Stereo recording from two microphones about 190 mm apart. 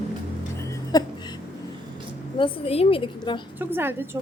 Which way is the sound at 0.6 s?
20° left (ahead or behind).